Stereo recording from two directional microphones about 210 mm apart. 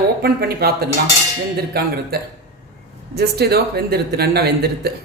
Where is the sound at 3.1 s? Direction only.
50° right (ahead or behind).